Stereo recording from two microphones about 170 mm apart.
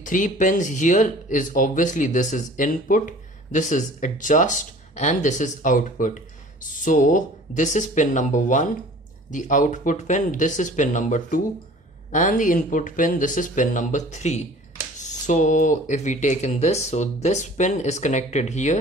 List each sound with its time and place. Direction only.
0.0 s speech: 50° left (ahead or behind)